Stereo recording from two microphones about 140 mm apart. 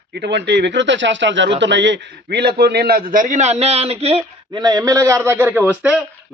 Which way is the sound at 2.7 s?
90° right.